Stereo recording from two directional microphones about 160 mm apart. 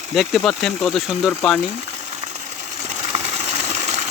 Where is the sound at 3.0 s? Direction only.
45° right (ahead or behind).